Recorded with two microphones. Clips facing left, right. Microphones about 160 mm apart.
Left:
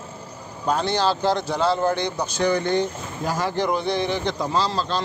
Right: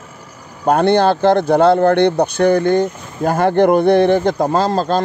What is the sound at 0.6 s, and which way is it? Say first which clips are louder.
Speech: right 9 dB; 55° right (ahead or behind).